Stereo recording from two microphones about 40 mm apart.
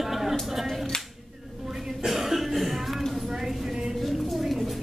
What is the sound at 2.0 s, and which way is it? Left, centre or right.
Cough, centre.